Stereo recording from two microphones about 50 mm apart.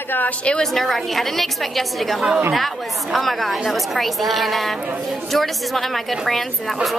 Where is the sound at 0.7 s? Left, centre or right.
Centre.